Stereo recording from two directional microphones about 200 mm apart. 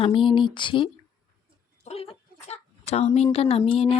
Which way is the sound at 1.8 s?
30° left (ahead or behind).